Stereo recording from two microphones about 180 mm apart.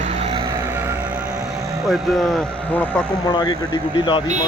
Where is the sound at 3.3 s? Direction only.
25° left (ahead or behind).